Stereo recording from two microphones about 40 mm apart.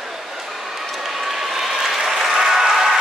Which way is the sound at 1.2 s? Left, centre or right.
Centre.